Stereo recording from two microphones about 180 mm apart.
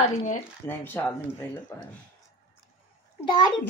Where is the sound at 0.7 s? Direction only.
10° left (ahead or behind).